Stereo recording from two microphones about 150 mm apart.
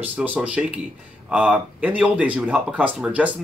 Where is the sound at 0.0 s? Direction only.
10° right (ahead or behind).